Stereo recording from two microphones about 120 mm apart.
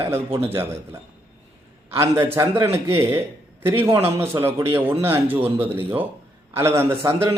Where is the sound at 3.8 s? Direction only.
20° right (ahead or behind).